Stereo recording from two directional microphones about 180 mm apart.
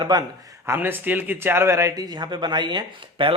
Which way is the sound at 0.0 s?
20° right (ahead or behind).